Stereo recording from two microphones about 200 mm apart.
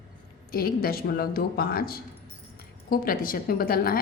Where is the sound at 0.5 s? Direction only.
50° left (ahead or behind).